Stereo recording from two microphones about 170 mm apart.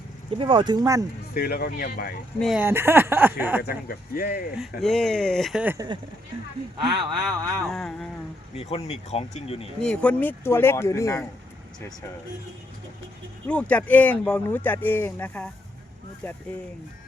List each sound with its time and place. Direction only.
0.3 s speech: 30° right (ahead or behind)
1.3 s speech: 65° left (ahead or behind)
2.6 s speech: 15° right (ahead or behind)
3.6 s speech: 65° left (ahead or behind)
4.5 s speech: centre (ahead or behind)
5.7 s speech: 20° right (ahead or behind)
7.7 s speech: 5° left (ahead or behind)
8.5 s speech: 35° left (ahead or behind)
9.8 s speech: 5° left (ahead or behind)
13.5 s speech: 10° left (ahead or behind)